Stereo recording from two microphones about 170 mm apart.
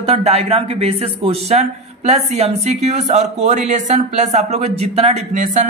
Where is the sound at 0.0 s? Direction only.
35° right (ahead or behind).